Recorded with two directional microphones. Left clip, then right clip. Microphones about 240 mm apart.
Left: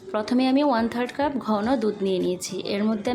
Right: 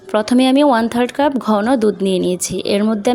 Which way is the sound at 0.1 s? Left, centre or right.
Right.